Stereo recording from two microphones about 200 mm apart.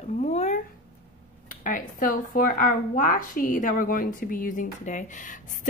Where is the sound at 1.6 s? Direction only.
40° left (ahead or behind).